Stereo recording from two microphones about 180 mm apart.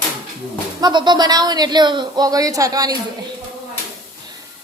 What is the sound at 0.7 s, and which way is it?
Speech, 25° right (ahead or behind).